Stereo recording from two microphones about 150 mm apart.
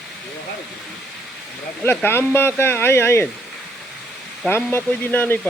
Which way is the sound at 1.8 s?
15° left (ahead or behind).